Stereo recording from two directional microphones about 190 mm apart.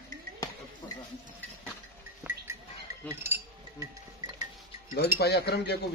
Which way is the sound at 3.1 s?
10° right (ahead or behind).